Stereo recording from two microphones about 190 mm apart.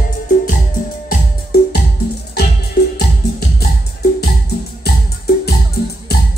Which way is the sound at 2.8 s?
55° left (ahead or behind).